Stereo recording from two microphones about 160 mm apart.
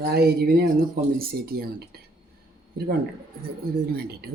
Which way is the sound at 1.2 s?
70° right (ahead or behind).